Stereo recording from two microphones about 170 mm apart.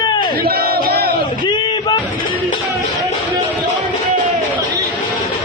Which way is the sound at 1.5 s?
25° left (ahead or behind).